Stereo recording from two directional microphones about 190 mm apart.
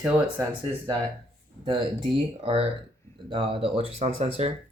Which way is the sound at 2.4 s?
25° right (ahead or behind).